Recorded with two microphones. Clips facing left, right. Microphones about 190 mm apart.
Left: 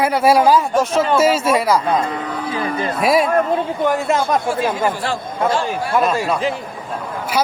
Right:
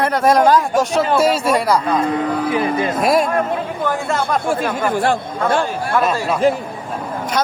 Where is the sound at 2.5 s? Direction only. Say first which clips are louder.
Right 3 dB; 15° right (ahead or behind).